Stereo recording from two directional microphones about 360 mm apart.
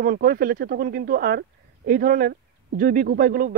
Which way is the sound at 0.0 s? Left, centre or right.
Right.